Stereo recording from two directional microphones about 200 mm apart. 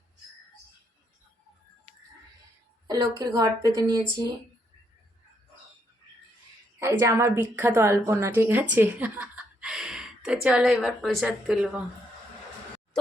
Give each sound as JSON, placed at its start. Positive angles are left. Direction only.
{"t": 2.8, "sound": "a woman's voice", "side_deg": -20}
{"t": 6.7, "sound": "a woman's voice", "side_deg": -15}